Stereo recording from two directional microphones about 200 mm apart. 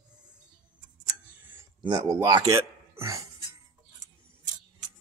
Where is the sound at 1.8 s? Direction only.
20° right (ahead or behind).